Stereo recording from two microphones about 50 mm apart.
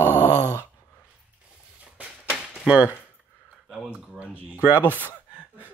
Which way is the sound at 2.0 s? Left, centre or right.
Right.